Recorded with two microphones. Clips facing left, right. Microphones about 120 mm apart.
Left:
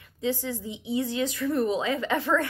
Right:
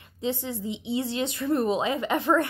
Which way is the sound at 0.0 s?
20° right (ahead or behind).